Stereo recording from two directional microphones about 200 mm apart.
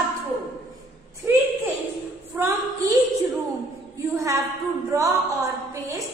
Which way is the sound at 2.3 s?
15° right (ahead or behind).